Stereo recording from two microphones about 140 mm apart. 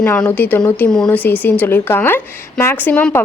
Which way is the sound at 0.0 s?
10° left (ahead or behind).